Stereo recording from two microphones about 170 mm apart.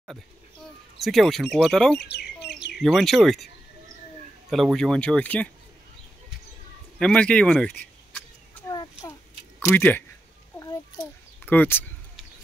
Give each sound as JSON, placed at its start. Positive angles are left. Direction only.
{"t": 0.9, "sound": "speech", "side_deg": 0}
{"t": 2.0, "sound": "bird", "side_deg": 90}
{"t": 2.8, "sound": "speech", "side_deg": 0}
{"t": 4.5, "sound": "speech", "side_deg": 0}
{"t": 7.0, "sound": "speech", "side_deg": 5}
{"t": 8.6, "sound": "a sound", "side_deg": 20}
{"t": 9.7, "sound": "speech", "side_deg": 10}
{"t": 11.0, "sound": "a sound", "side_deg": 10}